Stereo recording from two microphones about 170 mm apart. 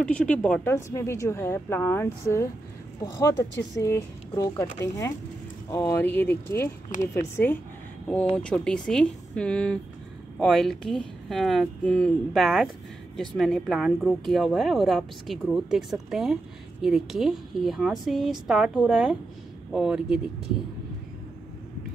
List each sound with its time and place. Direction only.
0.0 s speech: 5° left (ahead or behind)